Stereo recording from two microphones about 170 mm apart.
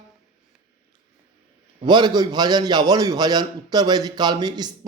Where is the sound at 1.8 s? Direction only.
25° right (ahead or behind).